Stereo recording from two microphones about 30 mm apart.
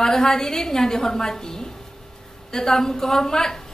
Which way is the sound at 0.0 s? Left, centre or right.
Centre.